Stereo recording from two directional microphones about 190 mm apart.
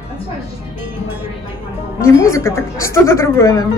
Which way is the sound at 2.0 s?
15° left (ahead or behind).